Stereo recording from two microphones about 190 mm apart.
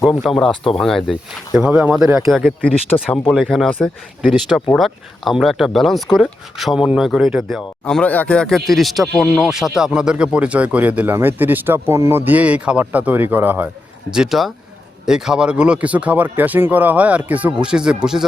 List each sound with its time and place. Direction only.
0.3 s speech: centre (ahead or behind)